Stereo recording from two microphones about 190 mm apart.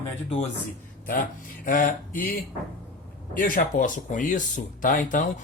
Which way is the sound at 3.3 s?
45° left (ahead or behind).